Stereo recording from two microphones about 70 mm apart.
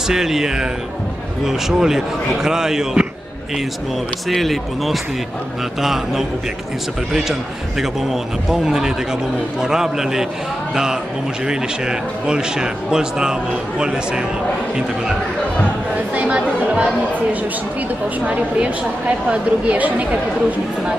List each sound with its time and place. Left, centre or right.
0.1 s a man's voice: centre
4.3 s a man's voice: centre
16.2 s a man's voice: centre
18.2 s a man's voice: centre